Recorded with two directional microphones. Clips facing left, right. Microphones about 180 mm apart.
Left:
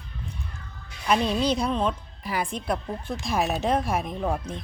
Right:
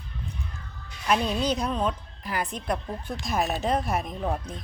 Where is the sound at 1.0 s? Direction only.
Centre (ahead or behind).